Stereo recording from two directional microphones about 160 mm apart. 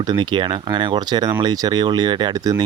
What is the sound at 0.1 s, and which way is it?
Speech, 30° right (ahead or behind).